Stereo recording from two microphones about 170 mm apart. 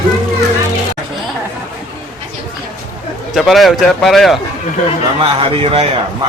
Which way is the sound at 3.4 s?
Centre (ahead or behind).